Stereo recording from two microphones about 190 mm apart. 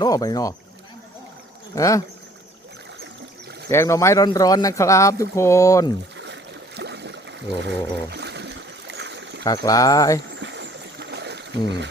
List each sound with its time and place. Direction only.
0.0 s speech: 20° left (ahead or behind)
1.7 s speech: 15° left (ahead or behind)
3.7 s speech: 15° left (ahead or behind)
6.1 s a sound: 70° right (ahead or behind)
7.6 s trickle: 65° right (ahead or behind)
9.4 s speech: 20° left (ahead or behind)
10.4 s stream: 70° right (ahead or behind)